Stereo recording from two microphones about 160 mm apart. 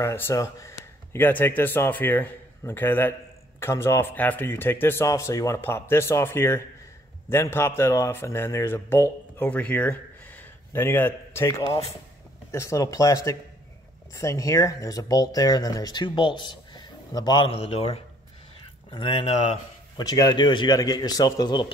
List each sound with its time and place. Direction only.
0.0 s speech: 15° left (ahead or behind)
17.6 s speech: 40° left (ahead or behind)
20.0 s speech: 25° left (ahead or behind)